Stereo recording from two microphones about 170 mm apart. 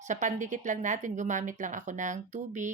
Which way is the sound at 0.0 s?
45° right (ahead or behind).